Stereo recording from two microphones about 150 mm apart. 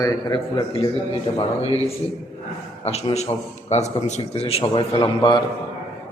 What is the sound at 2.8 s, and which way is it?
A man's voice, 45° left (ahead or behind).